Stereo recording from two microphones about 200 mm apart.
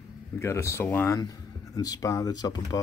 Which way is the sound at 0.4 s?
15° left (ahead or behind).